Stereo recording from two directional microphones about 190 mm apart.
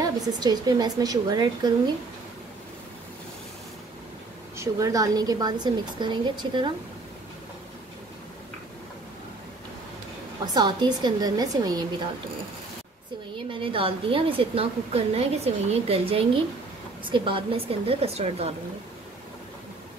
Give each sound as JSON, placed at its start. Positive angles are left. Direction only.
{"t": 0.0, "sound": "a woman's voice", "side_deg": -20}
{"t": 4.6, "sound": "a woman's voice", "side_deg": -15}
{"t": 10.4, "sound": "a woman's voice", "side_deg": -20}
{"t": 13.5, "sound": "a woman's voice", "side_deg": -25}